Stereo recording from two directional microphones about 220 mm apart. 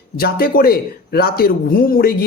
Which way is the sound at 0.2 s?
45° left (ahead or behind).